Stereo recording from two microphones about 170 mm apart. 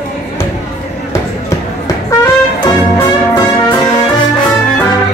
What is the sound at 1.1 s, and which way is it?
Music, 20° left (ahead or behind).